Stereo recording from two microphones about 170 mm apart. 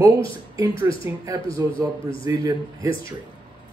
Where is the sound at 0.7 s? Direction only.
30° left (ahead or behind).